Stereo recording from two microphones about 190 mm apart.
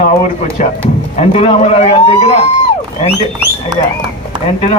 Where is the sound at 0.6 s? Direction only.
40° left (ahead or behind).